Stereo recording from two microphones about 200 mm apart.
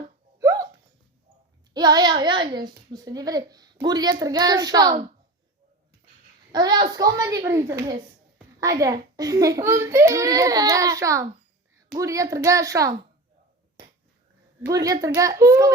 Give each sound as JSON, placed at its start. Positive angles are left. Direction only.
{"t": 0.3, "sound": "hiccup", "side_deg": -15}
{"t": 1.7, "sound": "a child's voice", "side_deg": -20}
{"t": 6.5, "sound": "a child's voice", "side_deg": -20}
{"t": 14.6, "sound": "a child's voice", "side_deg": -15}